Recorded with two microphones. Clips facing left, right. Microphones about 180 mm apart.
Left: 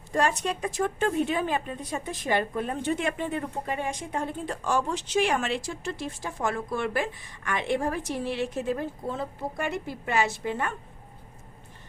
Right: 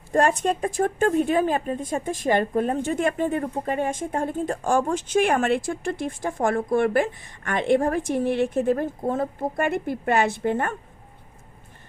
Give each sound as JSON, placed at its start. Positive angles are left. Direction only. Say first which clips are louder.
{"t": 0.1, "sound": "a woman's voice", "louder": "right 5 dB", "side_deg": -50}